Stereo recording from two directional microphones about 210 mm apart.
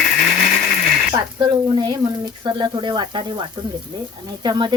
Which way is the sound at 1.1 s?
20° right (ahead or behind).